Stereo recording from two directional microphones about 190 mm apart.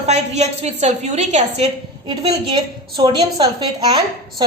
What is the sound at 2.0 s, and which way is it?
A woman's voice, 25° right (ahead or behind).